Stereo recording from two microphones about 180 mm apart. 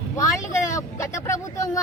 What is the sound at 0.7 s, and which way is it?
A woman's voice, 15° left (ahead or behind).